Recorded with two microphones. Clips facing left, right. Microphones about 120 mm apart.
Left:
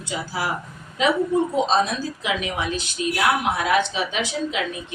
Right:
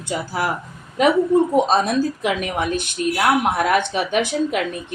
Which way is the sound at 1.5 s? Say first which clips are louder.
Right 4 dB; 55° right (ahead or behind).